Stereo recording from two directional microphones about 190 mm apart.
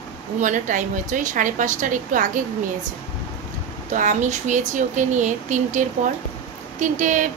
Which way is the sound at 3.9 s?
40° right (ahead or behind).